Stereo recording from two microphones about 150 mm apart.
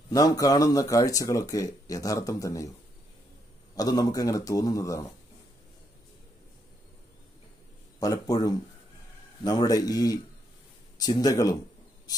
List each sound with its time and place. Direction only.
0.1 s speech: 25° left (ahead or behind)
3.7 s speech: 25° left (ahead or behind)
8.0 s speech: 25° left (ahead or behind)